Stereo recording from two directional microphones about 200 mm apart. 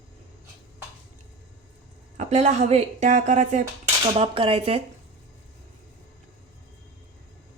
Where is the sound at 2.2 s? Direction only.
35° right (ahead or behind).